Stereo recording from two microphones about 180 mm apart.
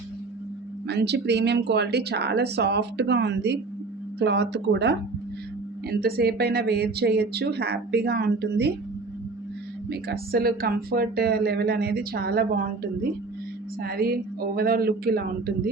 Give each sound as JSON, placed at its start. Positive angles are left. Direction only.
{"t": 0.9, "sound": "speech", "side_deg": -70}
{"t": 5.9, "sound": "speech", "side_deg": -60}
{"t": 9.9, "sound": "speech", "side_deg": -60}
{"t": 13.8, "sound": "speech", "side_deg": -55}